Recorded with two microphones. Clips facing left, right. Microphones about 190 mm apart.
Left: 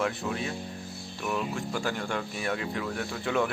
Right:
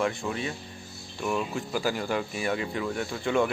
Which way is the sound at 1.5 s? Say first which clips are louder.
Right 2 dB; 5° right (ahead or behind).